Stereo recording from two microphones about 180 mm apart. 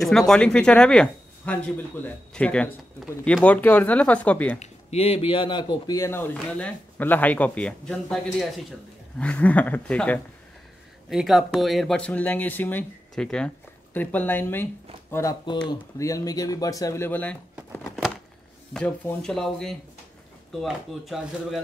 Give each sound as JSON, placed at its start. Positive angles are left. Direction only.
{"t": 0.3, "sound": "speech", "side_deg": 5}
{"t": 4.6, "sound": "speech", "side_deg": 35}